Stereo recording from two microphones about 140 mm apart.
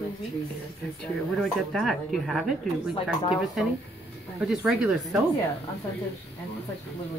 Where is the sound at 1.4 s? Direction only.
5° left (ahead or behind).